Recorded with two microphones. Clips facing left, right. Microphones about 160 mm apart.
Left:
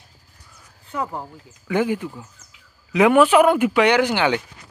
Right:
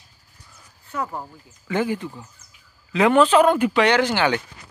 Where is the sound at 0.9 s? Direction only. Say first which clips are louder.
Left 1 dB; 15° left (ahead or behind).